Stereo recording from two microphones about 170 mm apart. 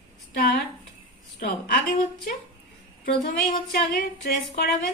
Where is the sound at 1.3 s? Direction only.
60° left (ahead or behind).